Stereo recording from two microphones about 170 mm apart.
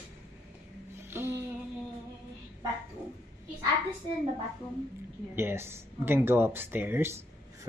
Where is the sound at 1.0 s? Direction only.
15° right (ahead or behind).